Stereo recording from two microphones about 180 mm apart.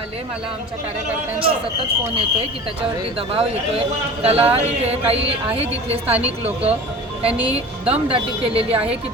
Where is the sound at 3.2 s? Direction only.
30° right (ahead or behind).